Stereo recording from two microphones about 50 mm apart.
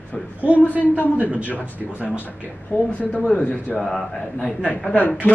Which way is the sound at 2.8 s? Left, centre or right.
Left.